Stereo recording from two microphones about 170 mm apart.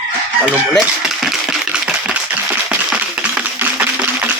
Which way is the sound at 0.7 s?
Centre (ahead or behind).